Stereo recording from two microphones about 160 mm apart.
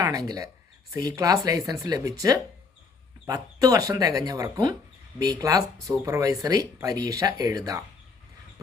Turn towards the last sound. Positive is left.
turn(degrees=-20)  # may be behind; listen again after turning